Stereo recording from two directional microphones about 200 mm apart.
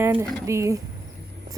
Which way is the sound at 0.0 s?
10° right (ahead or behind).